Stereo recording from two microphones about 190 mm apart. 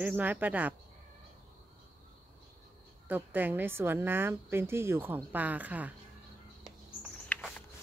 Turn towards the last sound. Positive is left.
turn(degrees=10)  # may be behind; listen again after turning